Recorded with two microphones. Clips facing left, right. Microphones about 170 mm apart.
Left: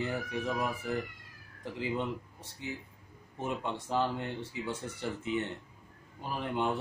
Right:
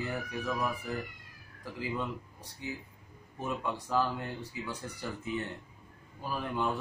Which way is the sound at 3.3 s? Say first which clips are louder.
Even; 25° left (ahead or behind).